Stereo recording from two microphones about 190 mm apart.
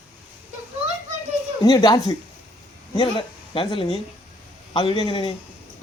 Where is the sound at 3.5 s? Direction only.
30° left (ahead or behind).